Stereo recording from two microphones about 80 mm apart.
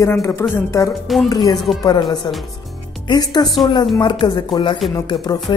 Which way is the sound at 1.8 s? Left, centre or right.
Left.